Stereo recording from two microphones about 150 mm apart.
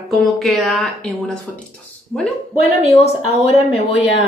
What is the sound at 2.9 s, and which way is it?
Speech, 45° left (ahead or behind).